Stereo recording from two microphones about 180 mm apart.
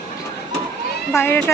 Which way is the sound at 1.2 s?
15° left (ahead or behind).